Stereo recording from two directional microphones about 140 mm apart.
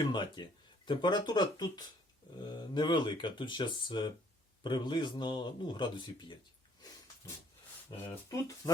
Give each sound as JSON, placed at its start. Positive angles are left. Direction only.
{"t": 0.1, "sound": "speech", "side_deg": 35}
{"t": 8.3, "sound": "speech", "side_deg": 25}